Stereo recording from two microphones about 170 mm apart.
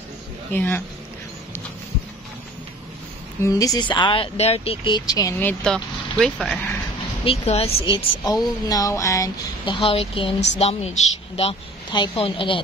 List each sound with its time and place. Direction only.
0.5 s speech: 10° left (ahead or behind)
3.4 s speech: 20° left (ahead or behind)
5.4 s speech: 5° left (ahead or behind)
7.2 s a woman's voice: 35° left (ahead or behind)